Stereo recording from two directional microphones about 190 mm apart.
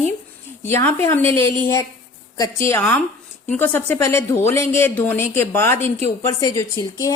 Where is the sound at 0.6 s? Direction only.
15° left (ahead or behind).